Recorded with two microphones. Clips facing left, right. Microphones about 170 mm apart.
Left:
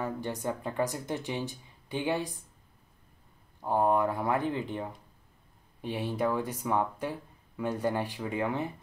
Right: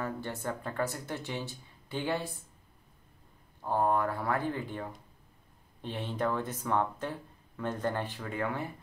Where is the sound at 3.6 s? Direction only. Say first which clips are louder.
Left 3 dB; 15° left (ahead or behind).